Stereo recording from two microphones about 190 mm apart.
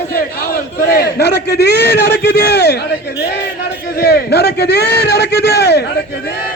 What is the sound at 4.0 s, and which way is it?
A man's voice, 55° left (ahead or behind).